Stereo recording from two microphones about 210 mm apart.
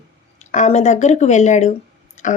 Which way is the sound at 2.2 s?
35° left (ahead or behind).